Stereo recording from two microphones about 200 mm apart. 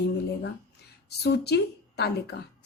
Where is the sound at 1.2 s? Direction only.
55° left (ahead or behind).